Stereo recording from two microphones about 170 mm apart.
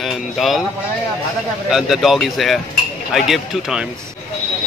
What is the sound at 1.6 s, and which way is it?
Speech, centre (ahead or behind).